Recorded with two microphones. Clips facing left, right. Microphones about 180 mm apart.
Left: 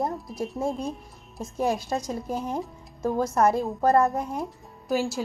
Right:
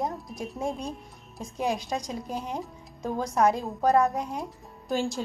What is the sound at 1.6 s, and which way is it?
Speech, 15° right (ahead or behind).